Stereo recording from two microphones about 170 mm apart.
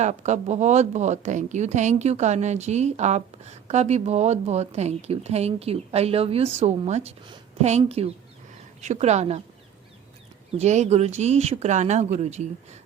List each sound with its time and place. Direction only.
0.0 s speech: 45° right (ahead or behind)
10.6 s speech: 40° right (ahead or behind)